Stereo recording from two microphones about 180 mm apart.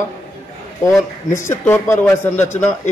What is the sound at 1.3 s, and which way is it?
Speech, 15° left (ahead or behind).